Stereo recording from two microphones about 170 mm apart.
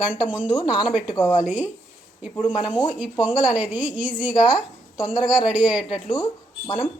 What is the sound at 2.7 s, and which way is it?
Speech, 30° left (ahead or behind).